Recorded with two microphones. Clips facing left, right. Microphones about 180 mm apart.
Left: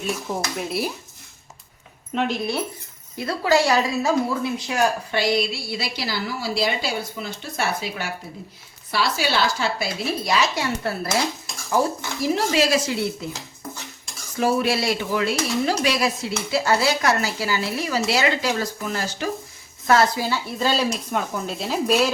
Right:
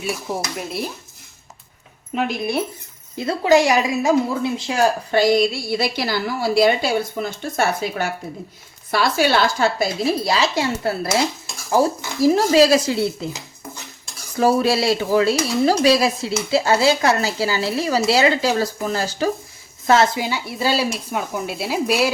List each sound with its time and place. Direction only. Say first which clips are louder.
0.0 s speech: right 1 dB; 5° right (ahead or behind)
2.1 s speech: right 1 dB; 5° right (ahead or behind)
3.2 s speech: right 4 dB; 20° right (ahead or behind)
4.5 s speech: right 2 dB; 25° right (ahead or behind)
5.1 s a woman's voice: right 6 dB; 45° right (ahead or behind); by 11.2 s 25° right (ahead or behind)
11.7 s dishes: right 4 dB; 35° right (ahead or behind)
14.3 s dishes: right 4 dB; 35° right (ahead or behind)
19.9 s speech: right 2 dB; 20° right (ahead or behind)